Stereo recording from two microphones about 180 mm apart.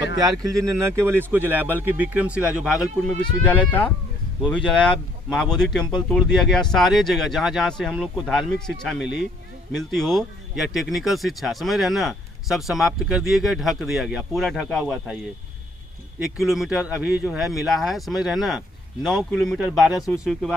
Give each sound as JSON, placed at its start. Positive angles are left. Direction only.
{"t": 0.7, "sound": "speech", "side_deg": -15}
{"t": 3.4, "sound": "speech", "side_deg": 10}
{"t": 16.2, "sound": "speech", "side_deg": 0}